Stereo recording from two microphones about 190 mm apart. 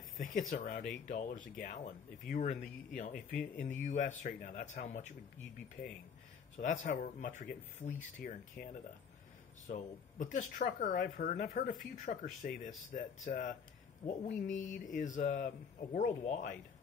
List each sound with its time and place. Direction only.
0.5 s speech: 45° left (ahead or behind)
6.6 s speech: 40° left (ahead or behind)
9.7 s speech: 40° left (ahead or behind)